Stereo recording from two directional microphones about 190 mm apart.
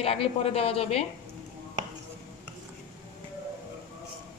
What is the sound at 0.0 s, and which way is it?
A woman's voice, 30° left (ahead or behind).